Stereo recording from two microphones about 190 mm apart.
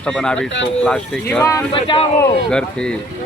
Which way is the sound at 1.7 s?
30° left (ahead or behind).